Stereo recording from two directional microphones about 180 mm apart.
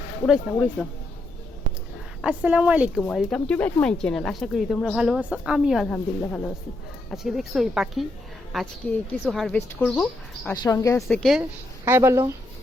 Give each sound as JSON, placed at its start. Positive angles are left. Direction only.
{"t": 0.3, "sound": "speech", "side_deg": -5}
{"t": 2.2, "sound": "speech", "side_deg": -5}
{"t": 3.0, "sound": "speech", "side_deg": 5}
{"t": 10.6, "sound": "speech", "side_deg": 20}
{"t": 11.1, "sound": "speech", "side_deg": 0}
{"t": 11.9, "sound": "speech", "side_deg": -15}